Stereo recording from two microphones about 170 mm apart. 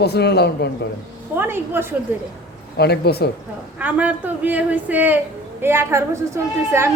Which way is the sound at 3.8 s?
10° right (ahead or behind).